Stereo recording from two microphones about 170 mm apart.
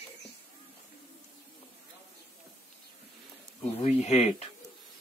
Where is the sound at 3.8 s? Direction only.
40° left (ahead or behind).